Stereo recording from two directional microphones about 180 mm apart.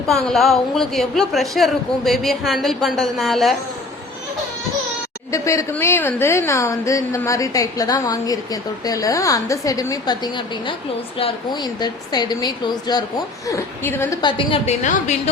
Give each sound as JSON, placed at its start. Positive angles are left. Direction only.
{"t": 0.3, "sound": "speech", "side_deg": 0}
{"t": 5.3, "sound": "a woman's voice", "side_deg": 15}
{"t": 14.2, "sound": "a woman's voice", "side_deg": 25}